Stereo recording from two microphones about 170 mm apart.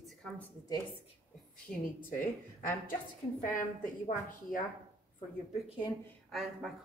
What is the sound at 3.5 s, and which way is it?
A woman's voice, 50° left (ahead or behind).